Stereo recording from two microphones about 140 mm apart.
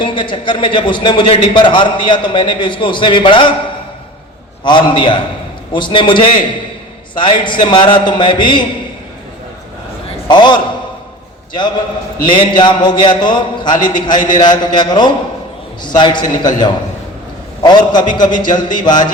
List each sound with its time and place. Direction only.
0.0 s a man's voice: 35° left (ahead or behind)
4.6 s a man's voice: 35° left (ahead or behind)
10.2 s a man's voice: 30° left (ahead or behind)
12.2 s a man's voice: 35° left (ahead or behind)